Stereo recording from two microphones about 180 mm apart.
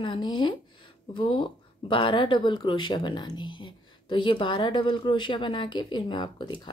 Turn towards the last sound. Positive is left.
turn(degrees=25)  # may be behind; listen again after turning